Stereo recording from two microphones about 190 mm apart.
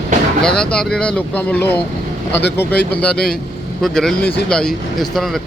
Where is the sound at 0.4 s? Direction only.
5° left (ahead or behind).